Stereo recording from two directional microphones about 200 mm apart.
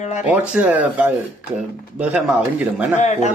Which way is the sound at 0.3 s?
5° right (ahead or behind).